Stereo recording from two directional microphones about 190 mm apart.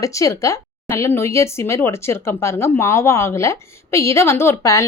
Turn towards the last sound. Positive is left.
turn(degrees=15)  # may be behind; listen again after turning